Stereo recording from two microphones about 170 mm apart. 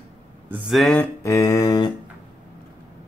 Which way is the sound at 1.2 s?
20° left (ahead or behind).